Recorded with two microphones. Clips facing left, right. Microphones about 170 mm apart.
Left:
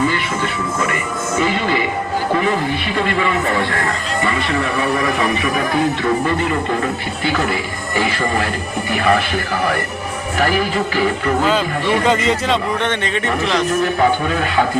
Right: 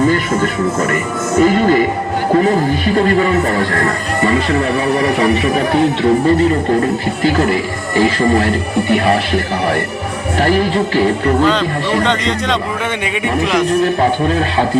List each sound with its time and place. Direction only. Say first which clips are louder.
0.1 s music: right 6 dB; 45° right (ahead or behind)
1.4 s speech: right 8 dB; 45° right (ahead or behind)
7.9 s speech: right 7 dB; 35° right (ahead or behind)
12.0 s a man's voice: even; 5° left (ahead or behind)
13.7 s speech: right 2 dB; 35° right (ahead or behind)